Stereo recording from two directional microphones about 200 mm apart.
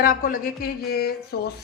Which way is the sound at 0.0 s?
45° left (ahead or behind).